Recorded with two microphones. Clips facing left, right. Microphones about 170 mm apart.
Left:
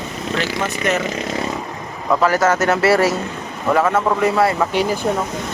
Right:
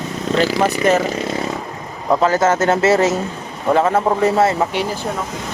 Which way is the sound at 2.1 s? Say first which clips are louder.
Right 1 dB; 25° right (ahead or behind).